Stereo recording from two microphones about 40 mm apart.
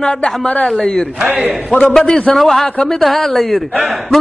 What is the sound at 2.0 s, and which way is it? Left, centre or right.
Speech, left.